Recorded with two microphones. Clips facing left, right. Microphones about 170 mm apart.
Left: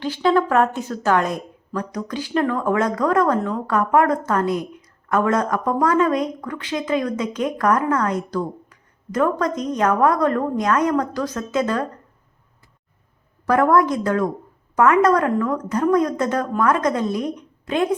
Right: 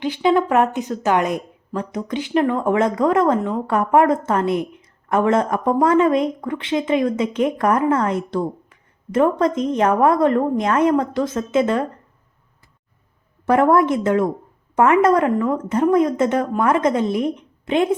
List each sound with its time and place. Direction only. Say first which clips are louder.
0.0 s speech: right 1 dB; 15° right (ahead or behind)
13.4 s speech: right 1 dB; 25° right (ahead or behind)